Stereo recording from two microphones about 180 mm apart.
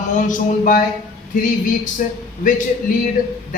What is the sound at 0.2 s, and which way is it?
Speech, 45° left (ahead or behind).